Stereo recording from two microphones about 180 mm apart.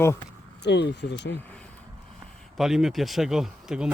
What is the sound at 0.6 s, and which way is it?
Speech, 70° left (ahead or behind).